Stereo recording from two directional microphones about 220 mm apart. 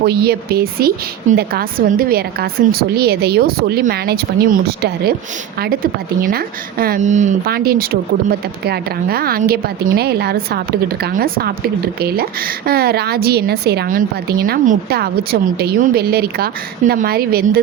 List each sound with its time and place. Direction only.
0.0 s a woman's voice: 45° right (ahead or behind)